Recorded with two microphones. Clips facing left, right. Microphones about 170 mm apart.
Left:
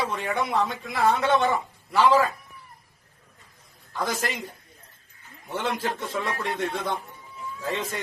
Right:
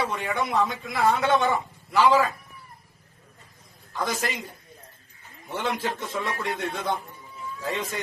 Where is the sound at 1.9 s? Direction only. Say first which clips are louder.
Even; centre (ahead or behind).